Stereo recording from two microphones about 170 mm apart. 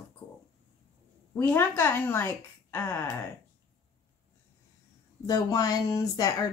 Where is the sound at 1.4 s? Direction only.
10° left (ahead or behind).